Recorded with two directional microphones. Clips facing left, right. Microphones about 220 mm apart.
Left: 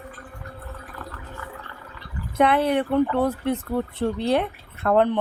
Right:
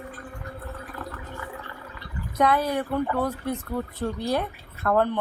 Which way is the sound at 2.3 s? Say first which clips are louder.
Left 3 dB; 25° left (ahead or behind).